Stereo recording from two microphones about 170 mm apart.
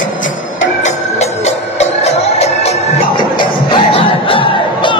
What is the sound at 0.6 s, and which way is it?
Music, 40° left (ahead or behind).